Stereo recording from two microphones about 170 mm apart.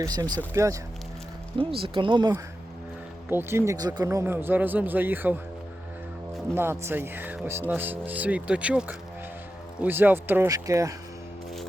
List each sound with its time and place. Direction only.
0.0 s speech: 20° right (ahead or behind)
1.5 s speech: 30° right (ahead or behind)
3.2 s speech: 15° right (ahead or behind)
6.5 s speech: 15° right (ahead or behind)